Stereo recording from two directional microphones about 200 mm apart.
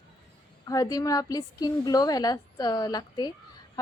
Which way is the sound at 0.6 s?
15° left (ahead or behind).